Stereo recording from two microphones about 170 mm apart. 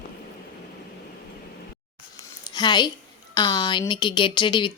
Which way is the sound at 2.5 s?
25° left (ahead or behind).